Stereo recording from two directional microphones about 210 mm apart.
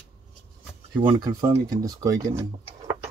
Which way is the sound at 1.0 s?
20° right (ahead or behind).